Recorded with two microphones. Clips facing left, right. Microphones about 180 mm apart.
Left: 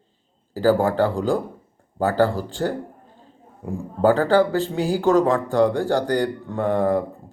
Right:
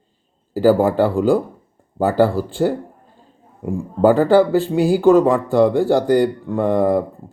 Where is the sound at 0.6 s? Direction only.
15° right (ahead or behind).